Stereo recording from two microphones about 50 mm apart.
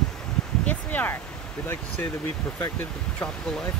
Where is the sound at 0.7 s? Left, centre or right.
Left.